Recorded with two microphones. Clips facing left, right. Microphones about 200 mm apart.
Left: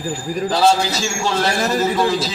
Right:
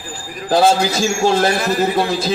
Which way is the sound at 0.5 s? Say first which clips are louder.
Right 4 dB; 50° right (ahead or behind).